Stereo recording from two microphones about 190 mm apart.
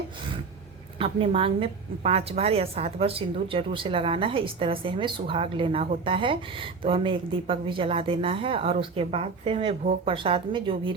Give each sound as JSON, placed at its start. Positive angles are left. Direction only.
{"t": 0.9, "sound": "a woman's voice", "side_deg": -30}